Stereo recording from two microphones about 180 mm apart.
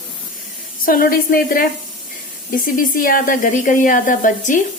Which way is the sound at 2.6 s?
50° left (ahead or behind).